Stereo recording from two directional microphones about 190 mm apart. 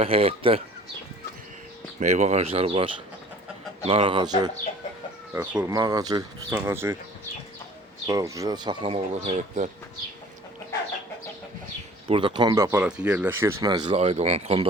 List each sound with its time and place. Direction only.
0.0 s speech: 30° right (ahead or behind)
2.0 s speech: 40° right (ahead or behind); by 7.0 s 10° right (ahead or behind)
8.0 s speech: 15° right (ahead or behind); by 9.6 s 35° right (ahead or behind)
12.0 s speech: 30° right (ahead or behind)